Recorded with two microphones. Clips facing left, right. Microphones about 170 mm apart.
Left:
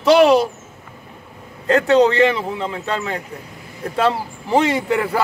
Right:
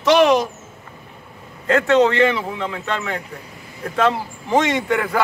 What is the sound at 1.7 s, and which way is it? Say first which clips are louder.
A man's voice: left 1 dB; 35° left (ahead or behind).